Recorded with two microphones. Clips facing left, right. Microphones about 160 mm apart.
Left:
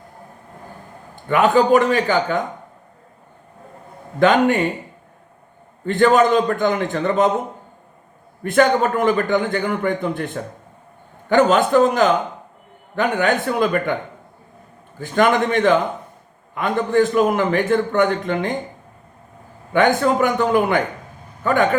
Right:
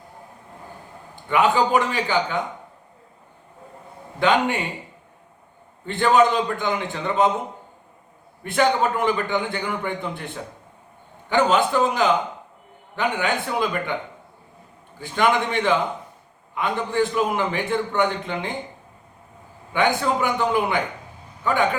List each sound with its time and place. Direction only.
1.3 s a man's voice: 50° left (ahead or behind)
4.2 s a man's voice: 50° left (ahead or behind)
5.8 s a man's voice: 50° left (ahead or behind)
8.4 s a man's voice: 50° left (ahead or behind)
19.7 s a man's voice: 50° left (ahead or behind)